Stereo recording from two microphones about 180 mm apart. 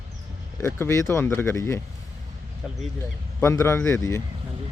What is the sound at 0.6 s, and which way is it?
Speech, 15° left (ahead or behind).